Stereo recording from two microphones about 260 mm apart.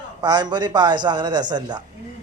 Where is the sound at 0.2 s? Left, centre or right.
Centre.